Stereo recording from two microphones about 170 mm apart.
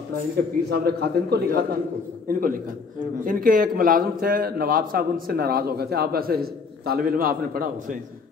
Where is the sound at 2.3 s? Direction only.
55° right (ahead or behind).